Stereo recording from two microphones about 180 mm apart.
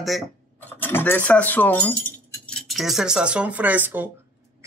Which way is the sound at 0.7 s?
10° left (ahead or behind).